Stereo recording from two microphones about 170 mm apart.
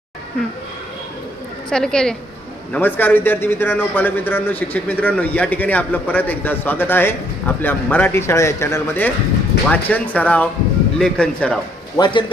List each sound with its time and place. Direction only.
1.7 s a man's voice: 5° left (ahead or behind)
11.9 s a man's voice: 25° left (ahead or behind)